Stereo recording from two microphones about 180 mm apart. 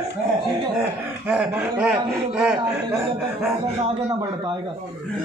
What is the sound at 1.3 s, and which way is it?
Speech, 5° right (ahead or behind).